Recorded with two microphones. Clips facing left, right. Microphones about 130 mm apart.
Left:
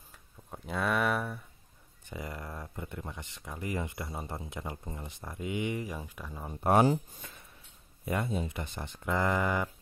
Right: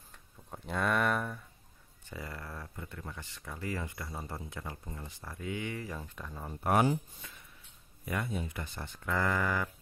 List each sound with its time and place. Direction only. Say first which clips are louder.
0.5 s a sound: even; centre (ahead or behind)
2.0 s speech: left 3 dB; 20° left (ahead or behind)
6.6 s speech: left 3 dB; 30° left (ahead or behind)
8.0 s speech: left 3 dB; 25° left (ahead or behind)